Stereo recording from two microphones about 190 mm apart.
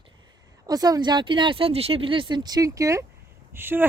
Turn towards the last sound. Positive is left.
turn(degrees=-10)  # may be behind; listen again after turning